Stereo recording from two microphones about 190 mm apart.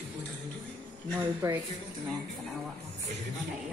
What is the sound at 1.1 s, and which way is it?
Speech, 15° right (ahead or behind).